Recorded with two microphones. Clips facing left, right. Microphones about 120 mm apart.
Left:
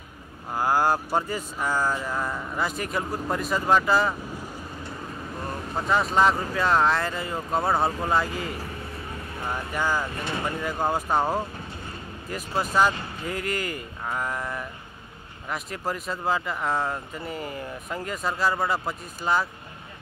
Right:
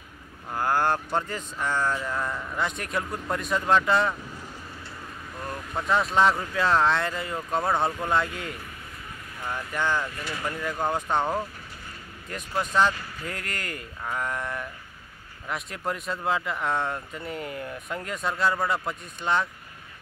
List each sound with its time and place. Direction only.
0.5 s speech: 10° left (ahead or behind)
5.8 s speech: centre (ahead or behind)
9.7 s speech: 10° left (ahead or behind)
10.0 s speech: 25° left (ahead or behind)
10.6 s speech: 10° left (ahead or behind)